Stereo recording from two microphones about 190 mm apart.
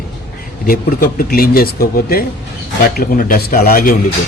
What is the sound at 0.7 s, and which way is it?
Speech, 50° left (ahead or behind).